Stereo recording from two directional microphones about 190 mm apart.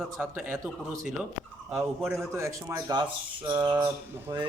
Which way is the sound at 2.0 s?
15° right (ahead or behind).